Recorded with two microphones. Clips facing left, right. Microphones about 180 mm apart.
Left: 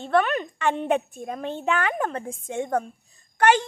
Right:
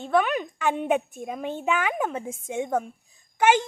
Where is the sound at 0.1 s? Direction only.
5° right (ahead or behind).